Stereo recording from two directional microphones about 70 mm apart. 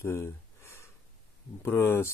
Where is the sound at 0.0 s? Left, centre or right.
Left.